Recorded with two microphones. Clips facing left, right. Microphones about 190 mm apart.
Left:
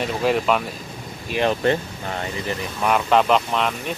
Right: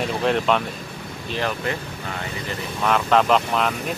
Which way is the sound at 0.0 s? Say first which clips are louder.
Left 1 dB; 5° left (ahead or behind).